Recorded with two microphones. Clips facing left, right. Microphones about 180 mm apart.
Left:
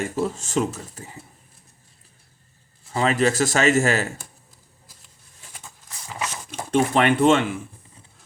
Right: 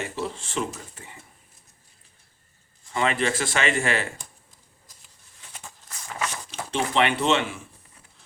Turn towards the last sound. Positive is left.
turn(degrees=50)  # may be behind; listen again after turning